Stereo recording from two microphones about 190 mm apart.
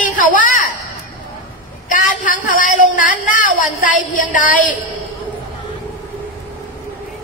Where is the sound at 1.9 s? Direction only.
45° left (ahead or behind).